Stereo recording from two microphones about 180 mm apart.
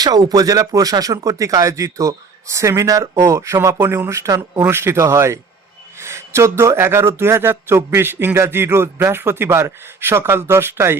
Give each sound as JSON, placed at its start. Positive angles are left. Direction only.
{"t": 0.0, "sound": "speech", "side_deg": -20}